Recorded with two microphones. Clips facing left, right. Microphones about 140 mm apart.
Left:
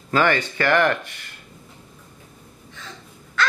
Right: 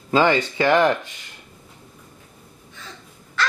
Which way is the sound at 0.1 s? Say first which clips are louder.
Right 2 dB; 15° right (ahead or behind).